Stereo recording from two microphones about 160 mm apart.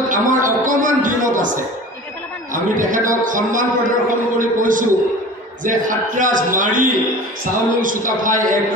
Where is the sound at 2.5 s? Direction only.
55° right (ahead or behind).